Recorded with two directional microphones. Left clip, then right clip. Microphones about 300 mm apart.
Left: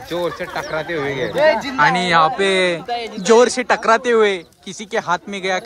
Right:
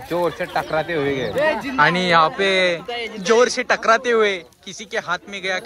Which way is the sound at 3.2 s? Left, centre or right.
Centre.